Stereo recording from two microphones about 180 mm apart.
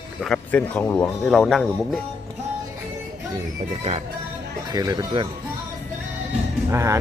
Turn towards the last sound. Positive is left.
turn(degrees=-15)  # may be behind; listen again after turning